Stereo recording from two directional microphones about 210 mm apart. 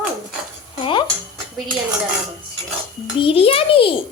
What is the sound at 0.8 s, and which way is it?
Music, 25° left (ahead or behind).